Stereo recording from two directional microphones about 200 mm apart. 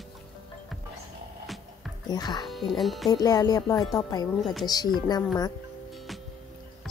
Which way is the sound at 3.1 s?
20° left (ahead or behind).